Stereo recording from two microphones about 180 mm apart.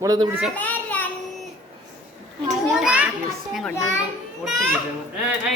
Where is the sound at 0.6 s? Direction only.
10° left (ahead or behind).